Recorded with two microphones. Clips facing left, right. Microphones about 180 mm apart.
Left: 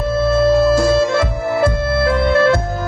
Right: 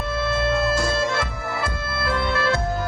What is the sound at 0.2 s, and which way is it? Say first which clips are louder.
Music: left 10 dB; 45° left (ahead or behind).